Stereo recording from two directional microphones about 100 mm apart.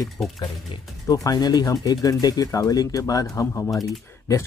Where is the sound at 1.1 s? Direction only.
40° left (ahead or behind).